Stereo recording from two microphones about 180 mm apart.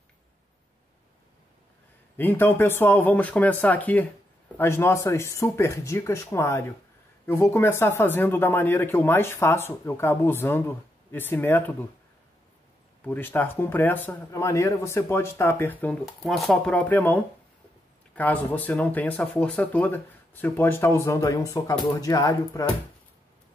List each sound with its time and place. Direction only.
2.1 s speech: 10° left (ahead or behind)
13.0 s speech: 10° left (ahead or behind)